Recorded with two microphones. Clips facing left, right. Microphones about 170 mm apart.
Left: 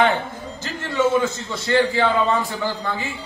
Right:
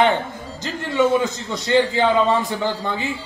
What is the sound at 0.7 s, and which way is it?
A man's voice, 15° right (ahead or behind).